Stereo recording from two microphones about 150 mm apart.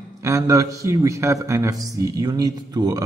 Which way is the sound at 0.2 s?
20° right (ahead or behind).